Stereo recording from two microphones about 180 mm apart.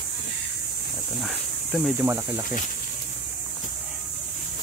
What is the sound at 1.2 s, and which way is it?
Snake, centre (ahead or behind).